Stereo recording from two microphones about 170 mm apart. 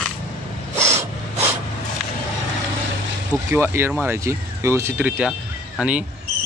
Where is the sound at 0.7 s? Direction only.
15° right (ahead or behind).